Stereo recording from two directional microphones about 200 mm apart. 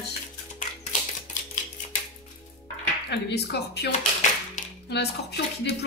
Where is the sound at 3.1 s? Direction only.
55° left (ahead or behind).